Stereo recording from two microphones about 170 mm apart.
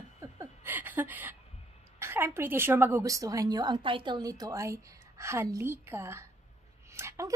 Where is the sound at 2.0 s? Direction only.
15° right (ahead or behind).